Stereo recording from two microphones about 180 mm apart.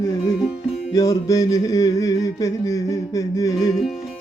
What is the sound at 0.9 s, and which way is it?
Music, 20° left (ahead or behind).